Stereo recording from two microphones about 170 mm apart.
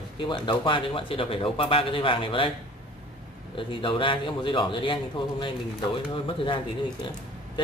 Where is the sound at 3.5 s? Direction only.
30° left (ahead or behind).